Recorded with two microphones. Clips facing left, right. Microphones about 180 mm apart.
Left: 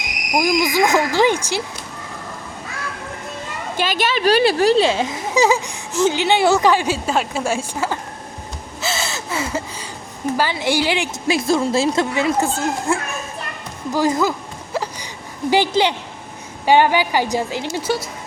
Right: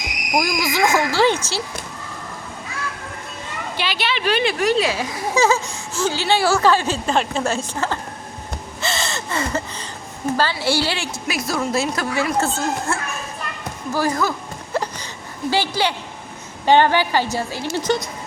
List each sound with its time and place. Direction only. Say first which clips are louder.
0.3 s speech: left 3 dB; 15° left (ahead or behind)
3.8 s speech: left 5 dB; 45° left (ahead or behind); by 7.9 s 10° left (ahead or behind)
8.8 s gasp: left 1 dB; 5° left (ahead or behind)
10.3 s a woman's voice: left 1 dB; 15° left (ahead or behind)
14.7 s a sound: right 1 dB; 10° left (ahead or behind)
16.6 s speech: left 1 dB; 10° left (ahead or behind)